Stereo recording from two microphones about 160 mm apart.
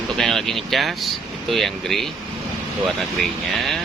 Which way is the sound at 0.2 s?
Centre (ahead or behind).